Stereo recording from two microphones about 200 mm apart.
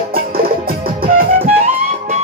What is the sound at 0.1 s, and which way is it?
Music, 45° right (ahead or behind).